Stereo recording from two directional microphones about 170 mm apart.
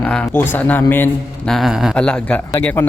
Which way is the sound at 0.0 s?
10° left (ahead or behind).